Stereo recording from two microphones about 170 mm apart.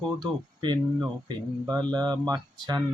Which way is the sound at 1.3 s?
20° right (ahead or behind).